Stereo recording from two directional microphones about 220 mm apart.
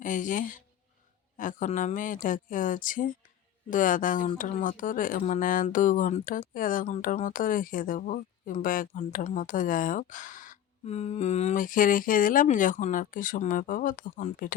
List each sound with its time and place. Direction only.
0.0 s speech: 35° left (ahead or behind)